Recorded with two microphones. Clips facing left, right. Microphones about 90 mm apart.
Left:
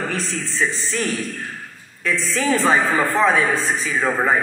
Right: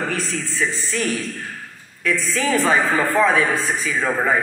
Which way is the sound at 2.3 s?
30° left (ahead or behind).